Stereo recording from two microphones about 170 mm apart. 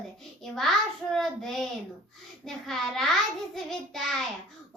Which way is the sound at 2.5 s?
Centre (ahead or behind).